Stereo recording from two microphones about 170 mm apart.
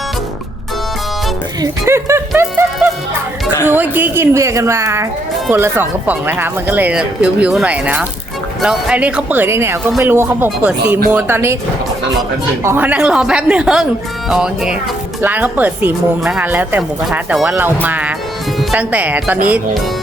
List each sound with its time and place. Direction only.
1.6 s speech: 15° right (ahead or behind)
2.6 s music: 10° right (ahead or behind)
3.6 s speech: 10° right (ahead or behind)
12.6 s speech: 10° right (ahead or behind)